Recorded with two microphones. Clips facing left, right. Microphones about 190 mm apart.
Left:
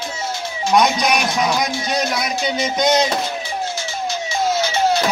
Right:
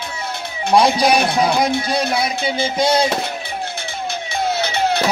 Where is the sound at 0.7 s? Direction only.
30° right (ahead or behind).